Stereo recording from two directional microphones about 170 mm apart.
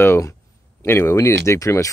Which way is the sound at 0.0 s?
15° left (ahead or behind).